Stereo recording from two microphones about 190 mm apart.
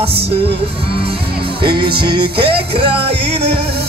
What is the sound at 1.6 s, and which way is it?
Music, 25° right (ahead or behind).